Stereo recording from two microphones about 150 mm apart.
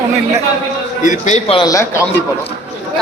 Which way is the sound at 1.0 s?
55° left (ahead or behind).